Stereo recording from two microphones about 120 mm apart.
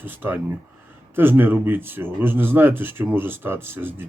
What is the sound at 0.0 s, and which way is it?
Speech, 15° right (ahead or behind).